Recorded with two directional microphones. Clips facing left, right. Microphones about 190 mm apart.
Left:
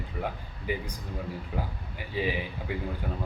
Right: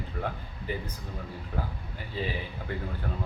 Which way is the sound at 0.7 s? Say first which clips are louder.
Left 2 dB; 15° left (ahead or behind).